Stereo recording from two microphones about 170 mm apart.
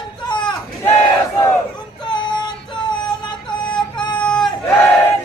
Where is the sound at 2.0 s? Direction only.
25° left (ahead or behind).